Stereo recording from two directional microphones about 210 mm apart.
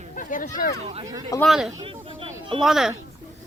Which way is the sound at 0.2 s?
40° left (ahead or behind).